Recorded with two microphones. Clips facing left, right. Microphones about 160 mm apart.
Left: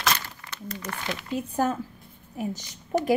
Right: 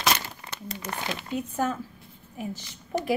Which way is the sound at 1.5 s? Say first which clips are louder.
Left 4 dB; 35° left (ahead or behind).